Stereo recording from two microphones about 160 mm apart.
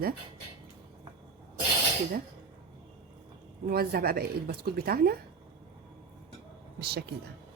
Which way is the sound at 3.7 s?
70° right (ahead or behind).